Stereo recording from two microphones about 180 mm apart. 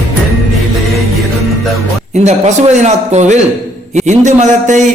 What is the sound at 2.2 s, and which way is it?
A man's voice, 40° right (ahead or behind).